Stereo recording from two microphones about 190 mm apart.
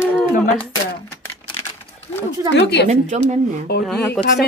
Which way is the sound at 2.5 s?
65° left (ahead or behind).